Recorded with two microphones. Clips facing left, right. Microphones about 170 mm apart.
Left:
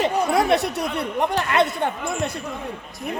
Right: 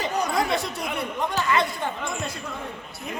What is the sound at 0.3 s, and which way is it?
Speech, 65° left (ahead or behind).